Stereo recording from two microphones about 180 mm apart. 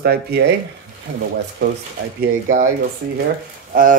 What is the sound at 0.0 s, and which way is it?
Speech, 60° right (ahead or behind).